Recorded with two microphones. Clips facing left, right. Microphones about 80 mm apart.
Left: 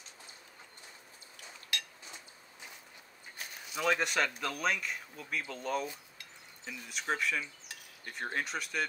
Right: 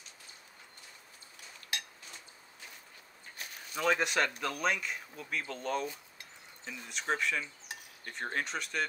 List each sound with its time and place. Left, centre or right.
1.7 s dishes: right
3.7 s speech: centre